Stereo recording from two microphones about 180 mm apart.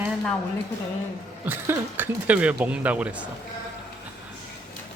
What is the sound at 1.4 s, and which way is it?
Speech, 10° right (ahead or behind).